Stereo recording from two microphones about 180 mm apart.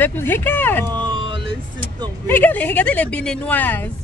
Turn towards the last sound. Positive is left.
turn(degrees=10)  # may be behind; listen again after turning